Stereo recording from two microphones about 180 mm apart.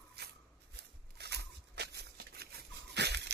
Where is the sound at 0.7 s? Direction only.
65° right (ahead or behind).